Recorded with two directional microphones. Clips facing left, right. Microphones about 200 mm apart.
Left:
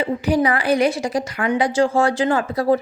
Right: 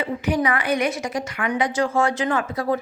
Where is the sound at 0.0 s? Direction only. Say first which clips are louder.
Left 4 dB; 35° left (ahead or behind).